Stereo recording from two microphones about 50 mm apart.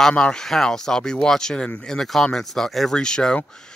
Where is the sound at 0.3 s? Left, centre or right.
Centre.